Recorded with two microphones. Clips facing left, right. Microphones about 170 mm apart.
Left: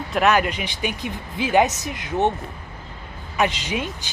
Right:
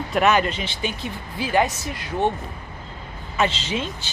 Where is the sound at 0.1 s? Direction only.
Centre (ahead or behind); by 2.3 s 20° left (ahead or behind).